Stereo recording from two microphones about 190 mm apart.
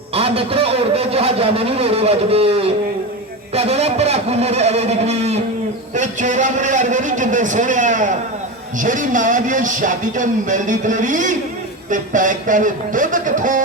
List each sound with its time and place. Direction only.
0.1 s a man's voice: 30° right (ahead or behind)